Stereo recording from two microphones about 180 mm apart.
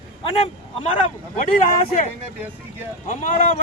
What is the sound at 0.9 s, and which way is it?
Speech, 45° left (ahead or behind).